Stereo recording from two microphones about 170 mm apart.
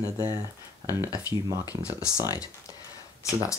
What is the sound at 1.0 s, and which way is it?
Speech, 20° left (ahead or behind).